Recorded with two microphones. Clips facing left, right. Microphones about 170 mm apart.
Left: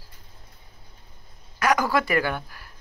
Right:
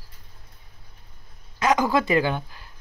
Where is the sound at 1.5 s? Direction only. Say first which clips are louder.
Right 1 dB; 20° right (ahead or behind).